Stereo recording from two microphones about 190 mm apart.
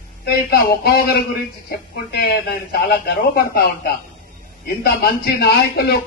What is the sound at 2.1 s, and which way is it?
A man's voice, 55° left (ahead or behind).